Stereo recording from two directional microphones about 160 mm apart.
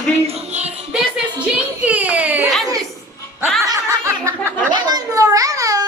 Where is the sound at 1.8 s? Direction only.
10° right (ahead or behind).